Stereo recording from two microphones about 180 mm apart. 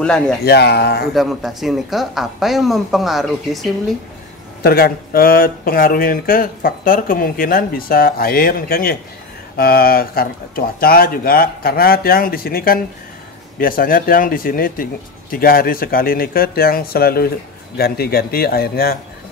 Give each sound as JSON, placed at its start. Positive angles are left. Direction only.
{"t": 0.0, "sound": "speech", "side_deg": 5}
{"t": 0.5, "sound": "speech", "side_deg": 65}
{"t": 1.1, "sound": "speech", "side_deg": 0}
{"t": 4.6, "sound": "speech", "side_deg": 55}